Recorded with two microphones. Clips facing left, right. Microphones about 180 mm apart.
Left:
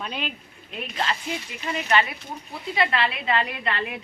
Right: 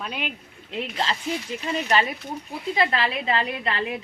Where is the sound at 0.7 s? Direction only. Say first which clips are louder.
Right 1 dB; 25° right (ahead or behind).